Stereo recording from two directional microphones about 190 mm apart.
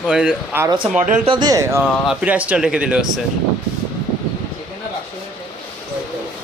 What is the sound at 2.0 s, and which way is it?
Speech, 5° right (ahead or behind).